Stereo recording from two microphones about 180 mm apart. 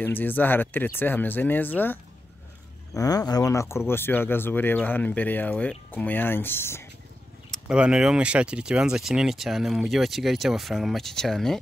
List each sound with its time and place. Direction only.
0.0 s speech: 10° left (ahead or behind)
7.5 s speech: 5° right (ahead or behind)